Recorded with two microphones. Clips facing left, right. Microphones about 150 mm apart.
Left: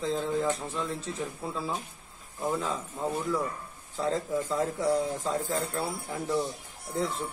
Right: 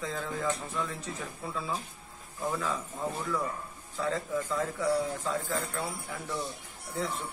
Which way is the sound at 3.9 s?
30° left (ahead or behind).